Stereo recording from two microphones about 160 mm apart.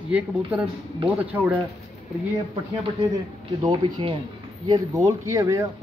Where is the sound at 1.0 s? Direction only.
10° right (ahead or behind).